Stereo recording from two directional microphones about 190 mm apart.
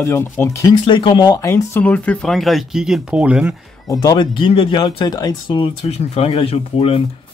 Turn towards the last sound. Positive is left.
turn(degrees=30)  # may be behind; listen again after turning